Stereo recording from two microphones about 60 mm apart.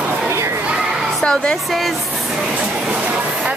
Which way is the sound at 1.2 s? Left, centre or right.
Centre.